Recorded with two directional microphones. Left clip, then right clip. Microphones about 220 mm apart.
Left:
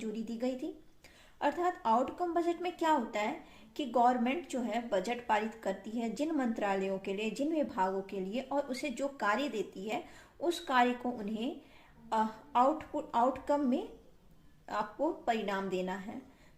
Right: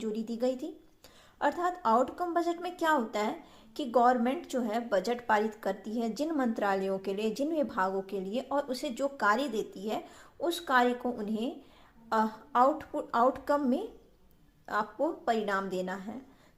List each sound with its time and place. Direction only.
0.0 s a woman's voice: 25° right (ahead or behind)